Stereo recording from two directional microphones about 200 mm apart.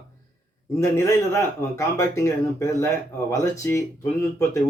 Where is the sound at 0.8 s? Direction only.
15° left (ahead or behind).